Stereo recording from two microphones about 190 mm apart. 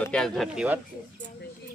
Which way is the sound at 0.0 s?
5° left (ahead or behind).